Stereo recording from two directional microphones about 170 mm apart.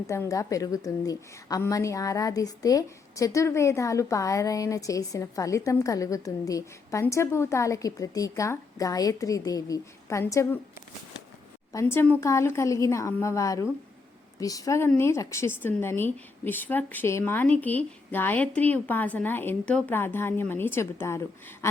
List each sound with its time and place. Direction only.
0.1 s a woman's voice: 20° left (ahead or behind)
11.7 s a woman's voice: 15° left (ahead or behind)